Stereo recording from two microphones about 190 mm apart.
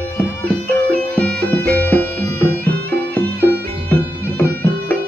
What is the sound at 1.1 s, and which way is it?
Music, 10° left (ahead or behind).